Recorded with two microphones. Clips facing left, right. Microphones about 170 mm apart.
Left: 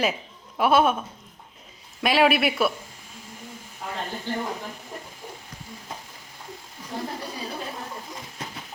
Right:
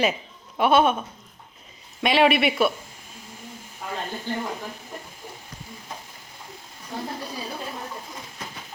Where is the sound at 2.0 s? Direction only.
Centre (ahead or behind).